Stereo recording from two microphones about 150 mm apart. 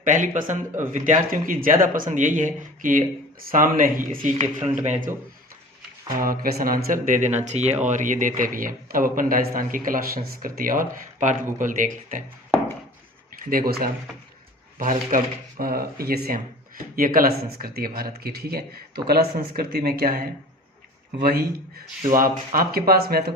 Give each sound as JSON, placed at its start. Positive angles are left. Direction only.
{"t": 0.0, "sound": "speech", "side_deg": -60}
{"t": 6.1, "sound": "speech", "side_deg": -70}
{"t": 6.9, "sound": "speech", "side_deg": -60}
{"t": 7.3, "sound": "speech", "side_deg": -50}
{"t": 13.4, "sound": "speech", "side_deg": -70}
{"t": 14.8, "sound": "speech", "side_deg": -65}
{"t": 22.2, "sound": "speech", "side_deg": -75}